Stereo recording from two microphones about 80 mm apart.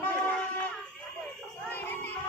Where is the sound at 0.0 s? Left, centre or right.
Left.